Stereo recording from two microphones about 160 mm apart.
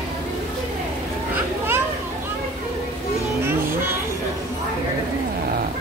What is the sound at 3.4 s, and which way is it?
Vehicle, 15° right (ahead or behind).